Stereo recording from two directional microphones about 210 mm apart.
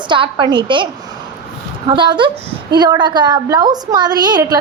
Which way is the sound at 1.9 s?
20° right (ahead or behind).